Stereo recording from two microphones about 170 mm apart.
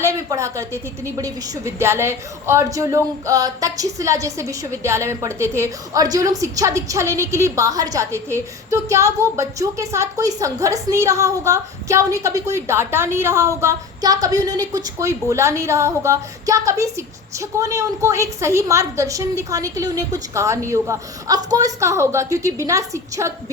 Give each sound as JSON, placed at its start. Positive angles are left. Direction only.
{"t": 0.0, "sound": "a woman's voice", "side_deg": -20}